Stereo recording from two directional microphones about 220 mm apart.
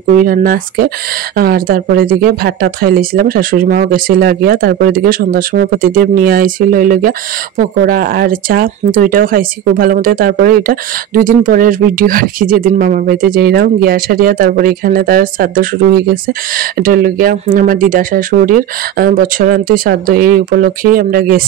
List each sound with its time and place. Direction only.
0.1 s speech: 40° right (ahead or behind)